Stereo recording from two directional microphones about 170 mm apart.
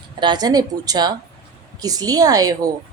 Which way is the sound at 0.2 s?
25° right (ahead or behind).